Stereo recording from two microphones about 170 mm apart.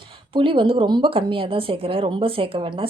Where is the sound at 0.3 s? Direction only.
30° right (ahead or behind).